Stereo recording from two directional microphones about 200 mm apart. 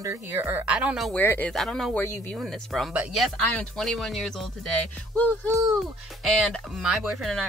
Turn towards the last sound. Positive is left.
turn(degrees=0)  # may be behind; listen again after turning